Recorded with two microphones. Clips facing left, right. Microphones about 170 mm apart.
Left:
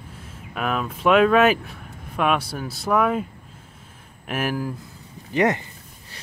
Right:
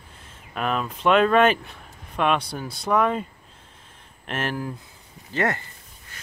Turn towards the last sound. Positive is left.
turn(degrees=15)  # may be behind; listen again after turning